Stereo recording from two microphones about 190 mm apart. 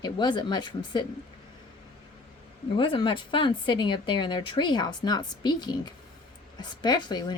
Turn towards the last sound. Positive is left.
turn(degrees=25)  # may be behind; listen again after turning